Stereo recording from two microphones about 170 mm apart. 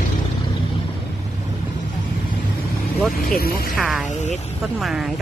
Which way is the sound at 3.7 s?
Centre (ahead or behind).